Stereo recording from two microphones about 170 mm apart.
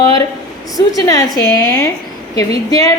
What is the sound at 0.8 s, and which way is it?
A woman's voice, 20° left (ahead or behind).